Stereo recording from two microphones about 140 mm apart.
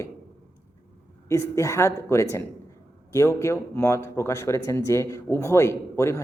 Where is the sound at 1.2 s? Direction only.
20° left (ahead or behind).